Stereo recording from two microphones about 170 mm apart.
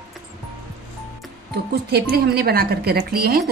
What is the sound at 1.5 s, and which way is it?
Speech, 70° right (ahead or behind).